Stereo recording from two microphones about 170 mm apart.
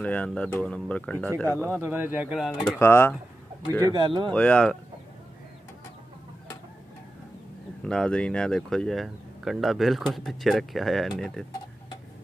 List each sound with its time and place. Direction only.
0.0 s speech: 5° left (ahead or behind)
1.5 s speech: 15° right (ahead or behind)
2.8 s speech: 15° left (ahead or behind)
3.8 s speech: 25° right (ahead or behind)
4.3 s speech: 5° left (ahead or behind)
7.8 s speech: 5° left (ahead or behind)